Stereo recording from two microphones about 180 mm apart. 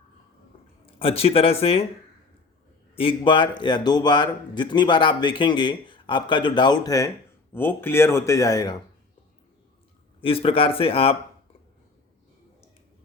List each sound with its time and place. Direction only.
0.9 s speech: 30° left (ahead or behind)
2.9 s speech: 30° left (ahead or behind)
10.2 s speech: 30° left (ahead or behind)